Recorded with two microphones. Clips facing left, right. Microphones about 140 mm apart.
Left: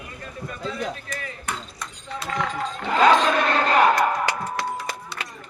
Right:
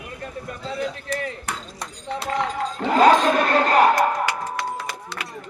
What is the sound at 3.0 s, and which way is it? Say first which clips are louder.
Speech: right 2 dB; 40° right (ahead or behind).